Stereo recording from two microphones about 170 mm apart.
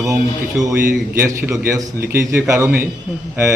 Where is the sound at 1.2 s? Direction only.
15° right (ahead or behind).